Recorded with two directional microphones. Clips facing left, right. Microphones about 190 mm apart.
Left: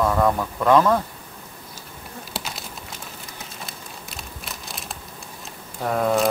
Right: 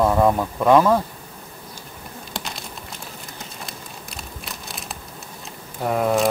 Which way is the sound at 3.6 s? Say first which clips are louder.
Right 1 dB; centre (ahead or behind).